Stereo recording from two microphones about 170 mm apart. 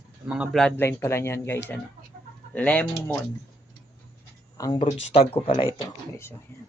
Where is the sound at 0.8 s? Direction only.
15° left (ahead or behind).